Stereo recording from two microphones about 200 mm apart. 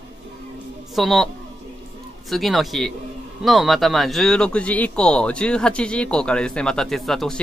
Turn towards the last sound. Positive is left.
turn(degrees=0)  # may be behind; listen again after turning